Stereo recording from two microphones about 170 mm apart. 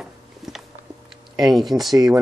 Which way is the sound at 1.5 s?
Centre (ahead or behind).